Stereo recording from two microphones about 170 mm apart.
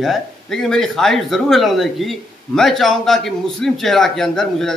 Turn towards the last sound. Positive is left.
turn(degrees=0)  # may be behind; listen again after turning